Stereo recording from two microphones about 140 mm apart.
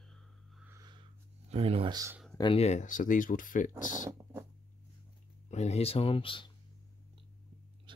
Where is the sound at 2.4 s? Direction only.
40° left (ahead or behind).